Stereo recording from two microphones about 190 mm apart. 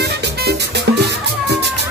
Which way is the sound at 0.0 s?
60° right (ahead or behind).